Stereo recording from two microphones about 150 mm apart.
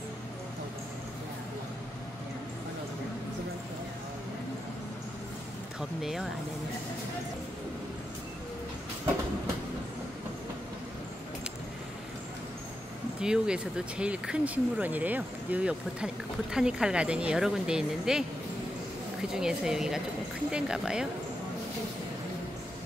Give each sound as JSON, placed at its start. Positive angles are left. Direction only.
{"t": 5.8, "sound": "speech", "side_deg": 0}
{"t": 13.2, "sound": "speech", "side_deg": -5}
{"t": 19.3, "sound": "speech", "side_deg": -5}